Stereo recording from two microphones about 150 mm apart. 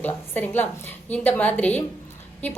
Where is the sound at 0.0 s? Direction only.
15° left (ahead or behind).